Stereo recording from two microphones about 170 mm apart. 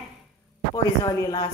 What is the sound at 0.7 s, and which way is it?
Speech, 20° left (ahead or behind).